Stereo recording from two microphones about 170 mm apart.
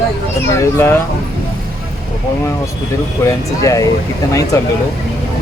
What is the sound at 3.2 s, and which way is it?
Speech, 20° left (ahead or behind).